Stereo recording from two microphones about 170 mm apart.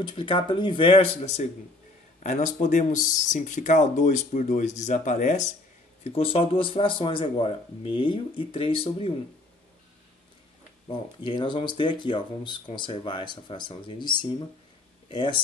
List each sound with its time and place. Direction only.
0.0 s speech: 30° left (ahead or behind); by 5.5 s 45° left (ahead or behind)
6.0 s speech: 35° left (ahead or behind)
10.9 s speech: 30° left (ahead or behind)